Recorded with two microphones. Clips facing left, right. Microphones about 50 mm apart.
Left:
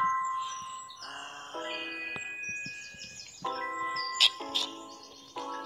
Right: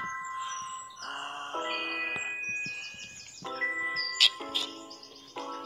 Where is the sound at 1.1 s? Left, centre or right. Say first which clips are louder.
Right 7 dB; right.